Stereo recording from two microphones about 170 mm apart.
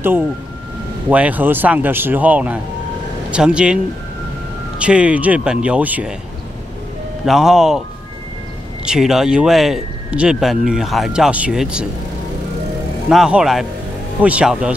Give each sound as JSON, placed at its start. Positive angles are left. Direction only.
{"t": 1.1, "sound": "speech", "side_deg": -10}
{"t": 7.2, "sound": "speech", "side_deg": 0}
{"t": 8.8, "sound": "speech", "side_deg": -5}
{"t": 13.1, "sound": "speech", "side_deg": -5}